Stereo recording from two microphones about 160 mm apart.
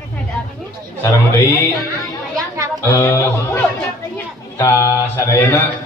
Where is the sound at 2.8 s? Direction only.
20° left (ahead or behind).